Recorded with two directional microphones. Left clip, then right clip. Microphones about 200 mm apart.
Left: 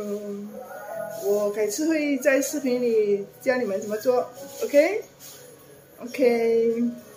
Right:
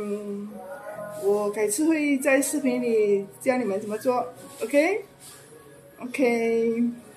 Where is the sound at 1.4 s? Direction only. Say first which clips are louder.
Even; 15° right (ahead or behind).